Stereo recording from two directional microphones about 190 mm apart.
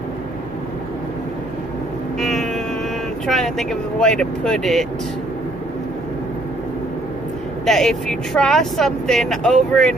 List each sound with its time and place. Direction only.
2.1 s music: centre (ahead or behind)
3.3 s speech: centre (ahead or behind)
7.6 s speech: 5° left (ahead or behind)